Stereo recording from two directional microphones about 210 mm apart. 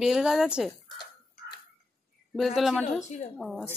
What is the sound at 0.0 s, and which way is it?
Speech, centre (ahead or behind).